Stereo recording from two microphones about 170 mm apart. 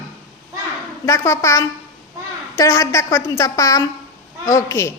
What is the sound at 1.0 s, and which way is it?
A woman's voice, 15° left (ahead or behind).